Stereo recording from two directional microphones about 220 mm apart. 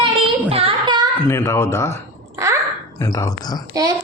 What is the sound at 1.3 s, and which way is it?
Speech, 10° left (ahead or behind).